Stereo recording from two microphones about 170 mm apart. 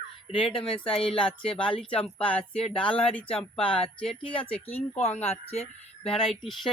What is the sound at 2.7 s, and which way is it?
Speech, 5° left (ahead or behind).